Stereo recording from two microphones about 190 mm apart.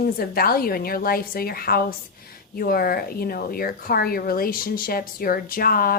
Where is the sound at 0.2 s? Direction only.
50° left (ahead or behind).